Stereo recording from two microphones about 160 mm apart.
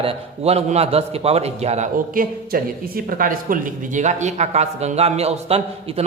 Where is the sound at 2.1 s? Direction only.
65° right (ahead or behind).